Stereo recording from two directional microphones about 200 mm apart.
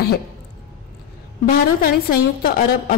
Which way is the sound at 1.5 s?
45° left (ahead or behind).